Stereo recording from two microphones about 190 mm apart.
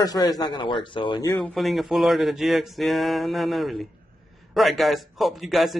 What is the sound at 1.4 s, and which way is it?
A man's voice, centre (ahead or behind).